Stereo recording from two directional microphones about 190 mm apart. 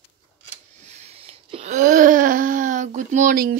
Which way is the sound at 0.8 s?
35° right (ahead or behind).